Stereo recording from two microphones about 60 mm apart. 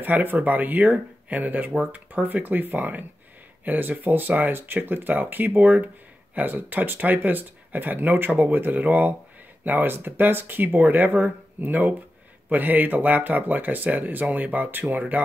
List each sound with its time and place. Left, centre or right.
0.0 s speech: right